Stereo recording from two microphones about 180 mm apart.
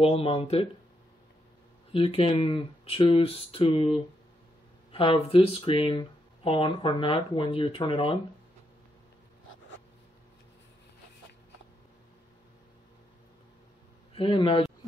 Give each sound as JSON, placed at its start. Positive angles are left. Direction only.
{"t": 0.0, "sound": "speech", "side_deg": 30}
{"t": 1.9, "sound": "speech", "side_deg": 30}
{"t": 14.1, "sound": "a man's voice", "side_deg": 30}